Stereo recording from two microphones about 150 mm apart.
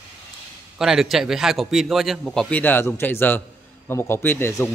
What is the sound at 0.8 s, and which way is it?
A man's voice, centre (ahead or behind).